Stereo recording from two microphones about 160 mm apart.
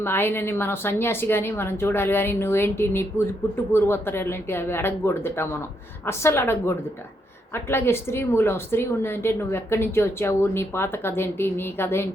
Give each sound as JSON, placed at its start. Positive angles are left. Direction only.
{"t": 0.0, "sound": "a woman's voice", "side_deg": 15}